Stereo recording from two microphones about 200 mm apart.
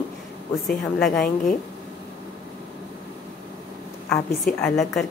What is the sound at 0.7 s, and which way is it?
Speech, centre (ahead or behind).